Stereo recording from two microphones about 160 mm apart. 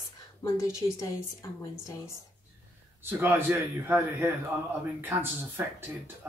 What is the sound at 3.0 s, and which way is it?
A man's voice, 10° right (ahead or behind).